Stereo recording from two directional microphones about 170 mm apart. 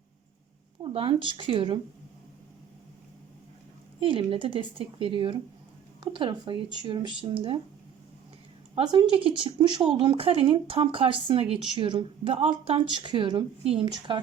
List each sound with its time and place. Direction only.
0.8 s speech: 30° right (ahead or behind)
4.0 s speech: 30° right (ahead or behind)
8.7 s speech: 30° right (ahead or behind)